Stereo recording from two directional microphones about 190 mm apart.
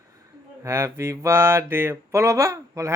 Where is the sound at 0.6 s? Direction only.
15° right (ahead or behind).